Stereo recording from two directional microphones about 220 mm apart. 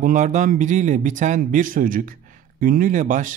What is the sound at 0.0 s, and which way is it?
Speech, 35° right (ahead or behind).